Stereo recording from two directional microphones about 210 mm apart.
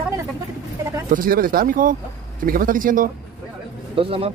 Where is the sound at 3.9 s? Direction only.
25° right (ahead or behind).